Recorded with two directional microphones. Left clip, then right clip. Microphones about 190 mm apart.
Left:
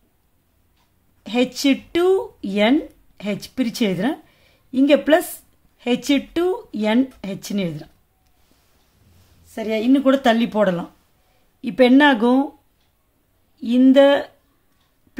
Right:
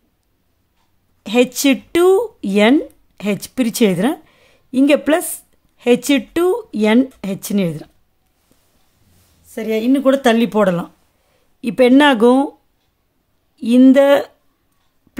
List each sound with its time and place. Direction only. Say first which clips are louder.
1.2 s a woman's voice: right 5 dB; 35° right (ahead or behind)
9.5 s speech: right 2 dB; 30° right (ahead or behind)
13.6 s speech: right 3 dB; 35° right (ahead or behind)